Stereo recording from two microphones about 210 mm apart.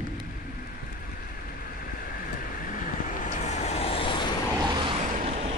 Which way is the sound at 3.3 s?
35° left (ahead or behind).